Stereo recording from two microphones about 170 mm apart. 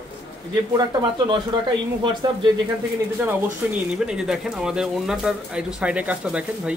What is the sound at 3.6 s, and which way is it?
Speech, 10° right (ahead or behind).